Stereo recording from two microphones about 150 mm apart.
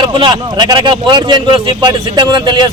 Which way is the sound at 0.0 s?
30° right (ahead or behind).